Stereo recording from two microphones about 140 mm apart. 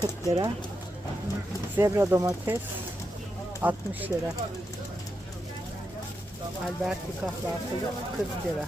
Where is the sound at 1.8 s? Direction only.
20° right (ahead or behind).